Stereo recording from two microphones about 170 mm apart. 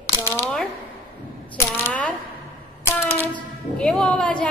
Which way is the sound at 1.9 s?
10° left (ahead or behind).